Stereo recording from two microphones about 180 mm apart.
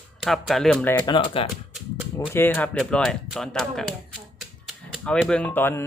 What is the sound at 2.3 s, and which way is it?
Speech, 10° left (ahead or behind).